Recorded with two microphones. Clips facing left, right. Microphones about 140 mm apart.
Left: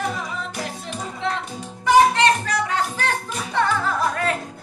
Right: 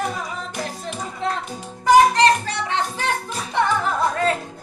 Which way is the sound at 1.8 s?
35° right (ahead or behind).